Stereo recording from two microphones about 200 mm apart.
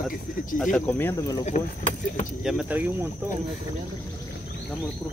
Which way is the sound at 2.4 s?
5° right (ahead or behind).